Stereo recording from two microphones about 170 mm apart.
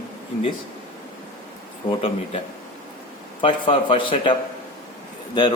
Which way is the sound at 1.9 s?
35° left (ahead or behind).